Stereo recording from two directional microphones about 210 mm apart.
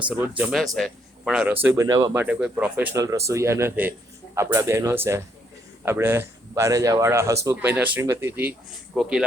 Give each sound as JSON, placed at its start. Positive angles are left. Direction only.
{"t": 0.1, "sound": "speech", "side_deg": -5}
{"t": 1.6, "sound": "speech", "side_deg": -15}
{"t": 2.1, "sound": "speech", "side_deg": -5}